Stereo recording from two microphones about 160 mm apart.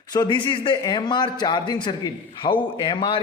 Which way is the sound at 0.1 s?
30° left (ahead or behind).